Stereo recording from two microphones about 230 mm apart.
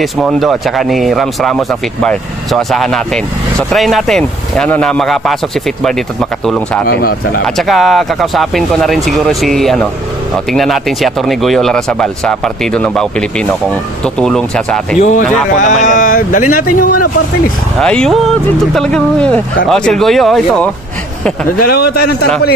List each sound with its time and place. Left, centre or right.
0.0 s speech: centre
6.4 s speech: centre
6.9 s speech: left
7.4 s speech: centre
14.0 s speech: centre
15.0 s speech: left
17.7 s speech: centre
21.5 s speech: left